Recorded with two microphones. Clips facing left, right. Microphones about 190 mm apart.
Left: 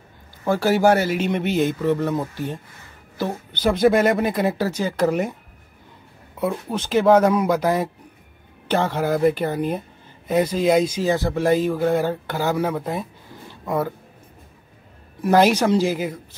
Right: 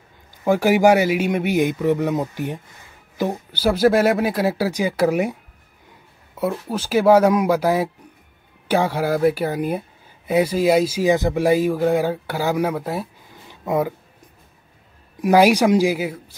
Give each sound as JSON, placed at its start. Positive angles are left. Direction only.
{"t": 0.4, "sound": "speech", "side_deg": -15}
{"t": 15.2, "sound": "speech", "side_deg": -10}